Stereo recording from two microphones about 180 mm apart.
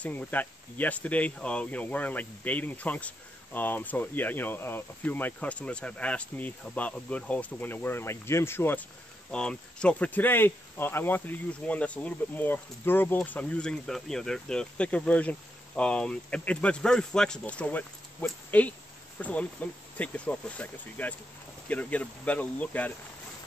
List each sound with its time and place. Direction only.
0.0 s speech: 10° left (ahead or behind)